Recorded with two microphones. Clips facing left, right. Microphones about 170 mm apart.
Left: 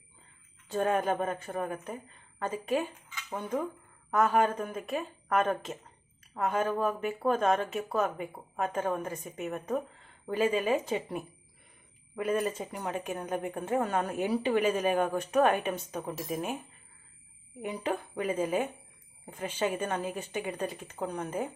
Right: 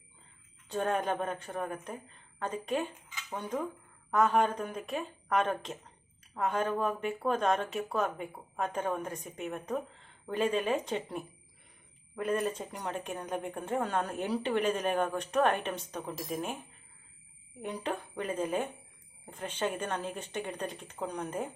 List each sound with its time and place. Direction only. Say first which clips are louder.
0.7 s speech: left 3 dB; 5° left (ahead or behind)
17.6 s speech: left 3 dB; 5° left (ahead or behind)